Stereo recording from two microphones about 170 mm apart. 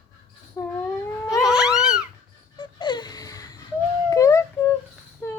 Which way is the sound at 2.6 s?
25° left (ahead or behind).